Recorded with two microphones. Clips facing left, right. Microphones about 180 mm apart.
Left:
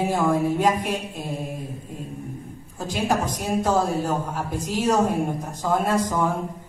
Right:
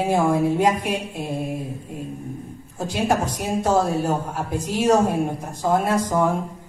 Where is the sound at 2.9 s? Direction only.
10° right (ahead or behind).